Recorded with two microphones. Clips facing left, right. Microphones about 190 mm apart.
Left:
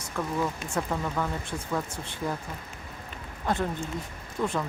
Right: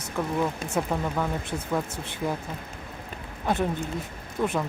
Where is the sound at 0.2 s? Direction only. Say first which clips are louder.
Right 3 dB; 20° right (ahead or behind).